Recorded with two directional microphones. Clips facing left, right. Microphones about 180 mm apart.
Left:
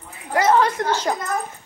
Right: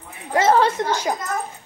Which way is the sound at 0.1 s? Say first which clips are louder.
Right 1 dB; 25° right (ahead or behind).